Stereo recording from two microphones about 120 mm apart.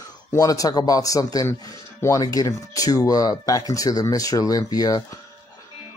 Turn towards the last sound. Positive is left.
turn(degrees=30)  # may be behind; listen again after turning